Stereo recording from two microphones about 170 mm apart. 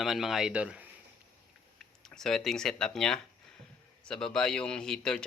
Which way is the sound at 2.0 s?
5° left (ahead or behind).